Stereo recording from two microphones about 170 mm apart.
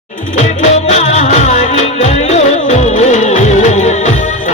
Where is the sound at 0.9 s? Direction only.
40° left (ahead or behind).